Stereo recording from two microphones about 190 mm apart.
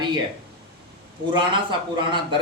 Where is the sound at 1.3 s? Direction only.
25° right (ahead or behind).